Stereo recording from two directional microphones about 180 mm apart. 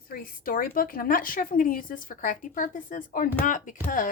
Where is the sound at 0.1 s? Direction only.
50° left (ahead or behind).